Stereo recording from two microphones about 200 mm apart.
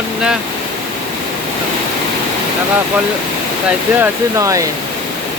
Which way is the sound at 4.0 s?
15° right (ahead or behind).